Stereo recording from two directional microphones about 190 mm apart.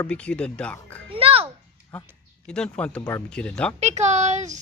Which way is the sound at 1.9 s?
5° left (ahead or behind).